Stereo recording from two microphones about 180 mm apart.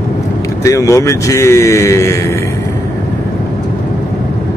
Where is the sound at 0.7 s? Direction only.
15° left (ahead or behind).